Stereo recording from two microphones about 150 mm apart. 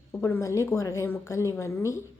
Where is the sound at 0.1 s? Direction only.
15° left (ahead or behind).